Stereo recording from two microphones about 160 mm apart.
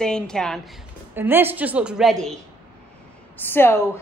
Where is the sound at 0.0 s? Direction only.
5° left (ahead or behind).